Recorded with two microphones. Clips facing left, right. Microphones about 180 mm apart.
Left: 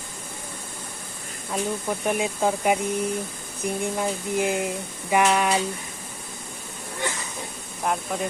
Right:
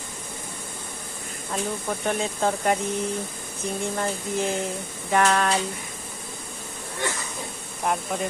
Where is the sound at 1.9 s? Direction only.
10° left (ahead or behind).